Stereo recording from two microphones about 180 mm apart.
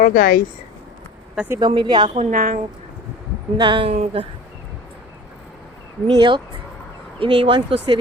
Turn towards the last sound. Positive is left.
turn(degrees=-30)  # may be behind; listen again after turning